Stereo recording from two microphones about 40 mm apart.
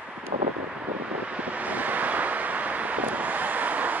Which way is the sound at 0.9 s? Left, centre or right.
Right.